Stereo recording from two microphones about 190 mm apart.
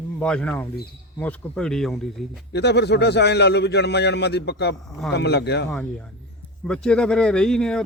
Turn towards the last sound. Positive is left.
turn(degrees=5)  # may be behind; listen again after turning